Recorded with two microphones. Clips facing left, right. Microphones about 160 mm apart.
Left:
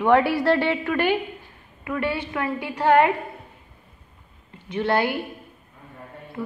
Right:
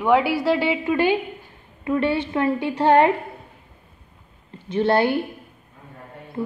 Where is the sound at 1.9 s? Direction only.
25° right (ahead or behind).